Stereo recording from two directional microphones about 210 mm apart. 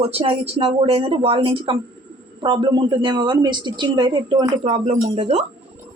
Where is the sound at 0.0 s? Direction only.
25° right (ahead or behind).